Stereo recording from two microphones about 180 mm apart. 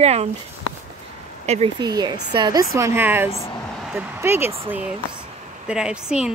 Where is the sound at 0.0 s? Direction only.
35° right (ahead or behind).